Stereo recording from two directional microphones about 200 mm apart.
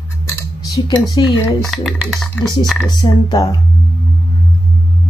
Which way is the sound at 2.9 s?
20° left (ahead or behind).